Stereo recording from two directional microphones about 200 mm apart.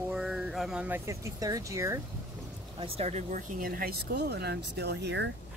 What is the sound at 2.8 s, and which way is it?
Speech, 30° right (ahead or behind).